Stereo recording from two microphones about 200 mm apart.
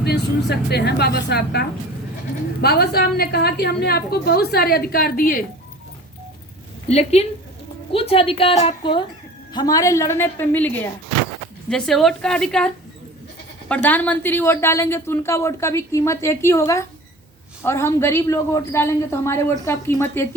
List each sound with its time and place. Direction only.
0.0 s a woman's voice: 55° left (ahead or behind)
6.8 s a woman's voice: 30° left (ahead or behind); by 20.2 s 10° left (ahead or behind)